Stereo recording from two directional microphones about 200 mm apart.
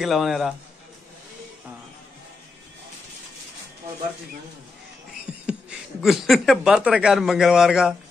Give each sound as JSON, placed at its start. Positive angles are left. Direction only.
{"t": 0.0, "sound": "a man's voice", "side_deg": 0}
{"t": 5.2, "sound": "speech", "side_deg": -5}